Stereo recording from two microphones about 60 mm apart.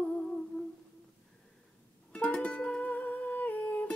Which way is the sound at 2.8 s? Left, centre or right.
Left.